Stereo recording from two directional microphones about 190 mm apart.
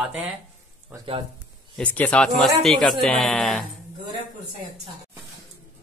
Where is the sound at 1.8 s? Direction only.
10° left (ahead or behind).